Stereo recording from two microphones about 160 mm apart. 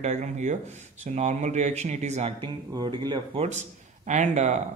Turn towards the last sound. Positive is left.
turn(degrees=-50)  # may be behind; listen again after turning